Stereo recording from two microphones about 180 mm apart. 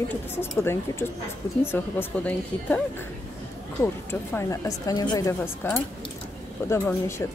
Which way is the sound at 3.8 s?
15° left (ahead or behind).